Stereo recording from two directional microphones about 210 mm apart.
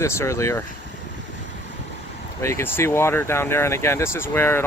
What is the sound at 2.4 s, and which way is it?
Speech, 10° left (ahead or behind).